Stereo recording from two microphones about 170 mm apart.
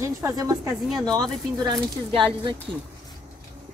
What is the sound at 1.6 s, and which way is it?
Speech, 25° right (ahead or behind).